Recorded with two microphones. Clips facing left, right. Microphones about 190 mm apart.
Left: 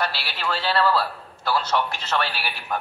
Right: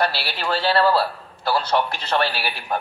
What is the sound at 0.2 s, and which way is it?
A man's voice, 30° right (ahead or behind).